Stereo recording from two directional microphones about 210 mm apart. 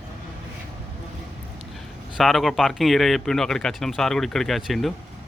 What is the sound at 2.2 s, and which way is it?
Speech, centre (ahead or behind).